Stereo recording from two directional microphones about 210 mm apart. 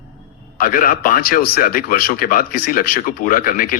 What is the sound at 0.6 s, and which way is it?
Speech, 40° left (ahead or behind).